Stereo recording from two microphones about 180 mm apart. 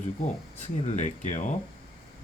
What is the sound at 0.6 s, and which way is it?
Speech, 45° left (ahead or behind).